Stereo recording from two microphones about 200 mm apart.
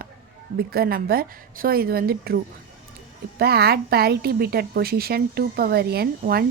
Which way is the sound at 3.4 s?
55° right (ahead or behind).